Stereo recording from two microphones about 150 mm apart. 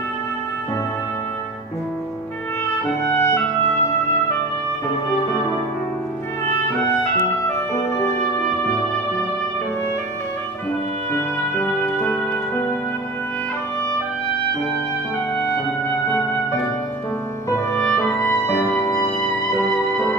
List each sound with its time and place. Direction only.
3.0 s music: 20° left (ahead or behind)
7.0 s music: 15° left (ahead or behind)
11.6 s music: 10° left (ahead or behind)
17.5 s music: 15° left (ahead or behind)